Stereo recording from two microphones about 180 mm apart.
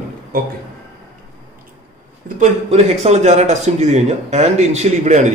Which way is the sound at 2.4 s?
35° right (ahead or behind).